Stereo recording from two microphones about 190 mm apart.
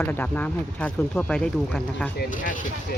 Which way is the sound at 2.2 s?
45° left (ahead or behind).